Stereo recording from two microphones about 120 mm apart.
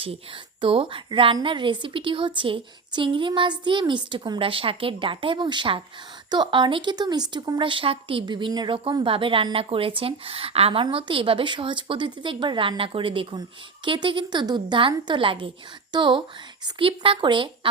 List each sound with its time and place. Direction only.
0.6 s speech: 45° right (ahead or behind)